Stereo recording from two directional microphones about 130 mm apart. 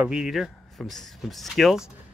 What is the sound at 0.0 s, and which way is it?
Speech, 5° right (ahead or behind).